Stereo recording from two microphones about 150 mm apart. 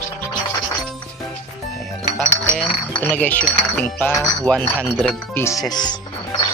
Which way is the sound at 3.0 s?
10° left (ahead or behind).